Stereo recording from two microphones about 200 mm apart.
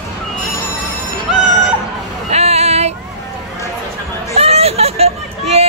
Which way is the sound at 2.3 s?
30° right (ahead or behind).